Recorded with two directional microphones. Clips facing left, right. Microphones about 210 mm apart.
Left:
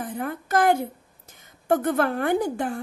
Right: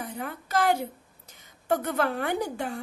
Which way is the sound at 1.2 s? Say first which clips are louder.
Left 5 dB; 50° left (ahead or behind).